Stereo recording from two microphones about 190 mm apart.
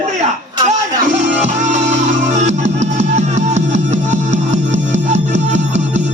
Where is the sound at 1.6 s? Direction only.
40° right (ahead or behind).